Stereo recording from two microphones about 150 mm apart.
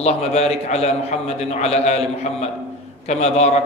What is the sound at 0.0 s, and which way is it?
A man's voice, 45° left (ahead or behind).